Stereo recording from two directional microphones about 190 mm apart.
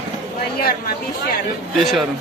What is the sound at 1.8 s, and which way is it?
Speech, centre (ahead or behind).